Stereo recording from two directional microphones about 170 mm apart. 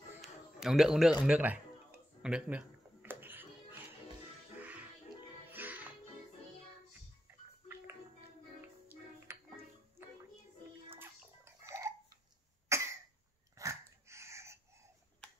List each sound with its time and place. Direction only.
0.2 s a sound: centre (ahead or behind)
1.2 s speech: 5° right (ahead or behind)
2.2 s music: 5° right (ahead or behind)
6.9 s a sound: 10° right (ahead or behind)
8.5 s music: 10° right (ahead or behind)
10.9 s music: 15° right (ahead or behind)
12.6 s cough: 15° right (ahead or behind)
13.6 s dog: 15° right (ahead or behind)